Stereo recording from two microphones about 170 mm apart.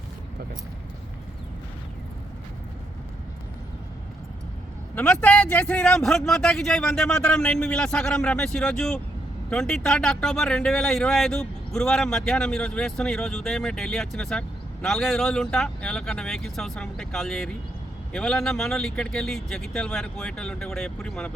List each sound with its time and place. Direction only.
4.9 s speech: 5° left (ahead or behind)